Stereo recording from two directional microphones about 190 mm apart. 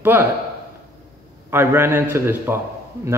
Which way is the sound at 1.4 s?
10° right (ahead or behind).